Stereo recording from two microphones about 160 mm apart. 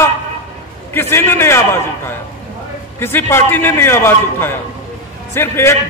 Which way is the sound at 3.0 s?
15° left (ahead or behind).